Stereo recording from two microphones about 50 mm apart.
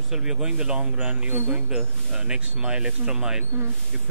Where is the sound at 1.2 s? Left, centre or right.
Right.